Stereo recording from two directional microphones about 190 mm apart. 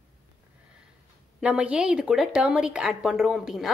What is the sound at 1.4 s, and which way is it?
Speech, 5° right (ahead or behind).